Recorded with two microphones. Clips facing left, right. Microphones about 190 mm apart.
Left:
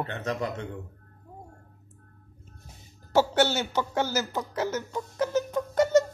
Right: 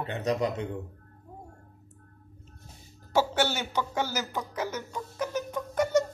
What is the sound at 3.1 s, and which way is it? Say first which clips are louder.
Speech: left 3 dB; 10° right (ahead or behind).